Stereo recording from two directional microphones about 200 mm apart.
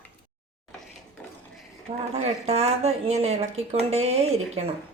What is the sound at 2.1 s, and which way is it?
Speech, 30° right (ahead or behind).